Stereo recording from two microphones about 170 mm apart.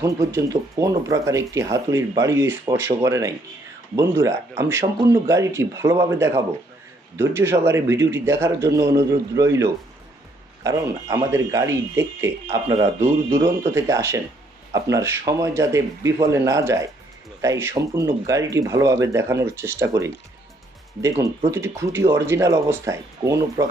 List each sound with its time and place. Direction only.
0.0 s speech: 20° right (ahead or behind)
21.5 s speech: 15° right (ahead or behind)